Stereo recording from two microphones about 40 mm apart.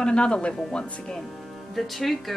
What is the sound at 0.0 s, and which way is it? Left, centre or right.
Speech, left.